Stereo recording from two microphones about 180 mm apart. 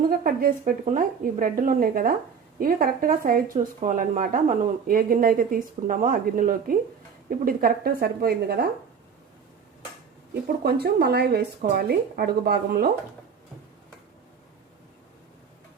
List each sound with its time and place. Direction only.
0.1 s speech: 55° right (ahead or behind)
10.4 s speech: 60° right (ahead or behind)